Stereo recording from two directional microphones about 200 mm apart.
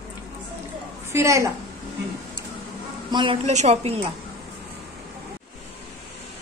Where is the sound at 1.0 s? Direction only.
15° right (ahead or behind).